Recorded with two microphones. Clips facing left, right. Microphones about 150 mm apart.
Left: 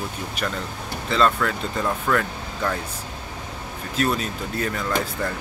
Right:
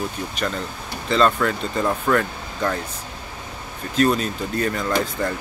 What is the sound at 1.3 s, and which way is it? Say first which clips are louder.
Speech: right 3 dB; 10° right (ahead or behind).